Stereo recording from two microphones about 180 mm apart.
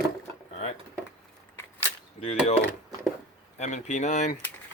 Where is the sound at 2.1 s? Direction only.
35° left (ahead or behind).